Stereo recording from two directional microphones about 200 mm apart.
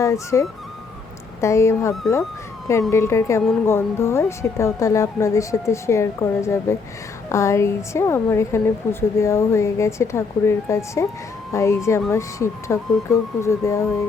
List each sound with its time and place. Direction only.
0.0 s a woman's voice: 15° left (ahead or behind)